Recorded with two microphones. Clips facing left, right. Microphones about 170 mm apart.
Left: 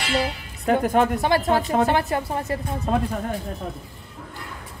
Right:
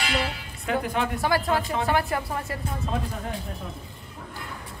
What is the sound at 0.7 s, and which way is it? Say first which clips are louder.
Speech: left 7 dB; 45° left (ahead or behind).